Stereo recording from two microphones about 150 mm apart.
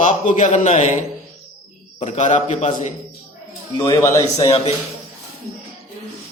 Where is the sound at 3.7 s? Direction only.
25° left (ahead or behind).